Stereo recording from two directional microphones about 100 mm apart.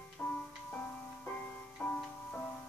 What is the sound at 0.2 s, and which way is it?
Music, 15° left (ahead or behind).